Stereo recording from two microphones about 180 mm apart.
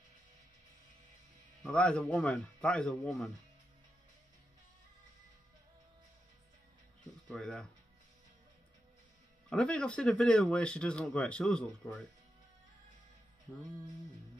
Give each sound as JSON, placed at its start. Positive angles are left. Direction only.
{"t": 1.7, "sound": "a man's voice", "side_deg": 5}
{"t": 7.2, "sound": "speech", "side_deg": 5}
{"t": 9.5, "sound": "a man's voice", "side_deg": 5}